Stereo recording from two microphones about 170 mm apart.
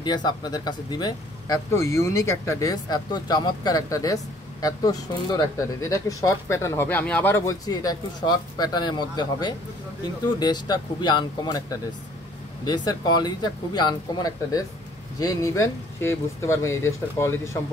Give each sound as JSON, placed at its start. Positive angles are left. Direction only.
{"t": 0.0, "sound": "speech", "side_deg": 25}